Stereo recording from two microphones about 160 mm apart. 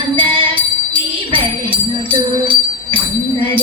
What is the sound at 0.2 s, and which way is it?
Music, 30° right (ahead or behind).